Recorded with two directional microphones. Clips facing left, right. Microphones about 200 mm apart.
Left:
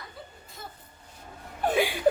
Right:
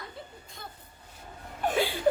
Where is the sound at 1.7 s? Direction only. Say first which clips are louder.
Left 2 dB; 15° left (ahead or behind).